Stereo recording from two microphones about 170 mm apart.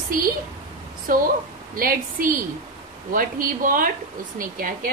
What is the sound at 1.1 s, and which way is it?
A woman's voice, 55° right (ahead or behind).